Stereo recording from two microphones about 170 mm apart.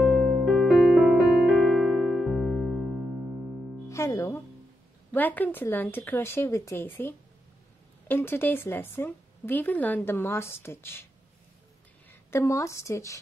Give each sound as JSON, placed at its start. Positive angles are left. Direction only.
{"t": 0.0, "sound": "music", "side_deg": 0}
{"t": 3.9, "sound": "music", "side_deg": 20}
{"t": 5.1, "sound": "a woman's voice", "side_deg": 10}
{"t": 12.1, "sound": "a woman's voice", "side_deg": 15}